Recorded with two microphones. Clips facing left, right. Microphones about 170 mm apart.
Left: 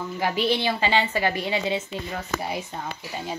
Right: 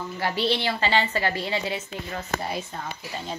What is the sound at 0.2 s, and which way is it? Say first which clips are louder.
Speech: left 2 dB; 15° left (ahead or behind).